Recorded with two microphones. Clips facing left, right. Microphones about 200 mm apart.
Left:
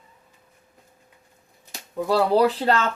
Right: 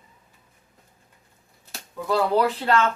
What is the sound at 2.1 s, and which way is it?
Speech, 35° left (ahead or behind).